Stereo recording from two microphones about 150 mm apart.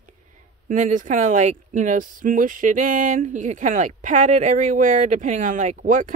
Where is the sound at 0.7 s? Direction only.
55° right (ahead or behind).